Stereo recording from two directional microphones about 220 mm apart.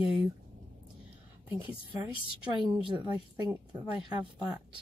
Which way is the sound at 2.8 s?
20° right (ahead or behind).